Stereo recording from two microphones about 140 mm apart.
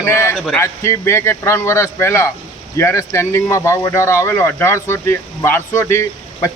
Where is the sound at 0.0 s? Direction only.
20° left (ahead or behind).